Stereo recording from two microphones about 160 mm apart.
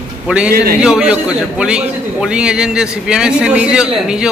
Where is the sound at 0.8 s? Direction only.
5° right (ahead or behind).